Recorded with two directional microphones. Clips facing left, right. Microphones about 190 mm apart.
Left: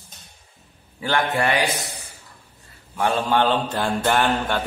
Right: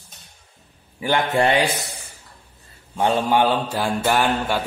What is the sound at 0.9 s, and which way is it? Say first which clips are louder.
Speech: right 3 dB; 15° right (ahead or behind).